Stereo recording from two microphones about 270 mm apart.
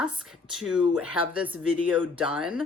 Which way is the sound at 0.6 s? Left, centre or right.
Centre.